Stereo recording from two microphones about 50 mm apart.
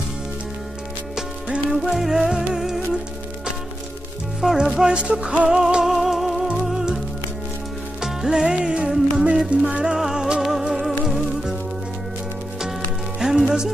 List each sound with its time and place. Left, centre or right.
1.7 s music: centre
4.4 s music: centre
4.7 s music: centre
8.0 s music: centre
10.7 s music: centre
13.2 s music: centre